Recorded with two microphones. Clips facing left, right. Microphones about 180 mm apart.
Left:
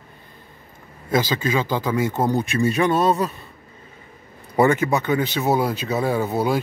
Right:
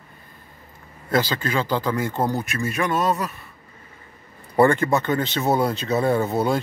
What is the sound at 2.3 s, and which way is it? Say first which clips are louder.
Speech: left 5 dB; 25° left (ahead or behind).